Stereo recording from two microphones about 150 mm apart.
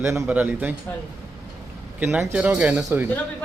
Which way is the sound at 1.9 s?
10° right (ahead or behind).